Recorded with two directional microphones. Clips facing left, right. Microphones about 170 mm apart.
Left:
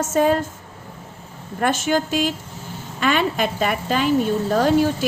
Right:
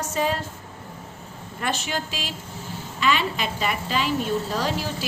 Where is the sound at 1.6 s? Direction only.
50° left (ahead or behind).